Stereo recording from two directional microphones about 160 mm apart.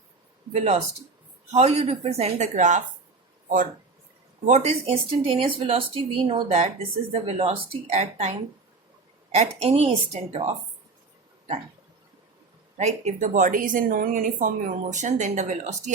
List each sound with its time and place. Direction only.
0.5 s a woman's voice: 40° right (ahead or behind)
4.4 s a woman's voice: 45° right (ahead or behind)
5.2 s speech: 35° right (ahead or behind)
12.7 s a woman's voice: 45° right (ahead or behind)